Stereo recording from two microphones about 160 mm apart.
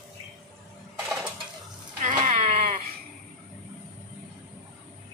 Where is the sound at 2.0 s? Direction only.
50° right (ahead or behind).